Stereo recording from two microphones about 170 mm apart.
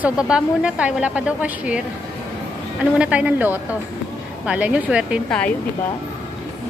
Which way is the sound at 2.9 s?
5° right (ahead or behind).